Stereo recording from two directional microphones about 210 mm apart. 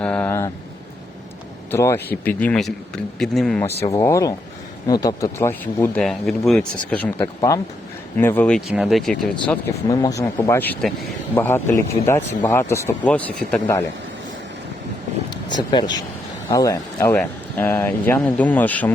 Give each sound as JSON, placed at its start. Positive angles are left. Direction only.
{"t": 0.0, "sound": "a sound", "side_deg": 5}
{"t": 1.7, "sound": "a man's voice", "side_deg": 10}
{"t": 3.8, "sound": "a man's voice", "side_deg": 15}
{"t": 9.8, "sound": "speech", "side_deg": 15}
{"t": 15.3, "sound": "vehicle", "side_deg": 20}
{"t": 16.5, "sound": "speech", "side_deg": 15}